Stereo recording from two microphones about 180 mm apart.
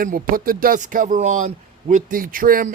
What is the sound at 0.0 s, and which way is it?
Speech, 50° right (ahead or behind).